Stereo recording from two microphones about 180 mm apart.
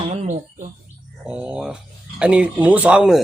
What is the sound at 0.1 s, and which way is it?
Bird, 40° right (ahead or behind).